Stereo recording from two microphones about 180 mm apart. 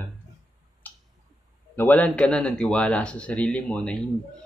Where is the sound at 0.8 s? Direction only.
10° left (ahead or behind).